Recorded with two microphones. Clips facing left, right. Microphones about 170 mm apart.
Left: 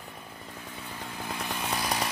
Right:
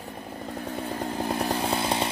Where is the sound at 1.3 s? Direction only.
35° right (ahead or behind).